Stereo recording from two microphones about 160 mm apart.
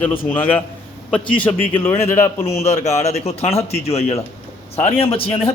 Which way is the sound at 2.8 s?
45° left (ahead or behind).